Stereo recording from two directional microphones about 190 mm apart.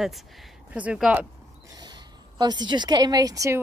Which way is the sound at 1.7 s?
20° right (ahead or behind).